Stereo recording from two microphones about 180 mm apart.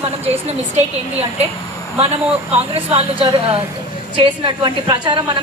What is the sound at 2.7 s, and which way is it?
A woman's voice, 30° right (ahead or behind).